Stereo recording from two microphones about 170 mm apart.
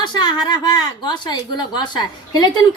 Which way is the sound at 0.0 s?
25° left (ahead or behind).